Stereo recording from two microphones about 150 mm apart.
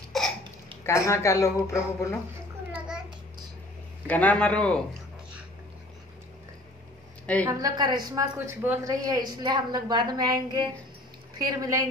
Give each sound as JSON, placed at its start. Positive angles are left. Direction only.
{"t": 0.1, "sound": "hiccup", "side_deg": 0}
{"t": 0.8, "sound": "speech", "side_deg": 20}
{"t": 4.1, "sound": "a man's voice", "side_deg": 10}
{"t": 7.4, "sound": "a woman's voice", "side_deg": -25}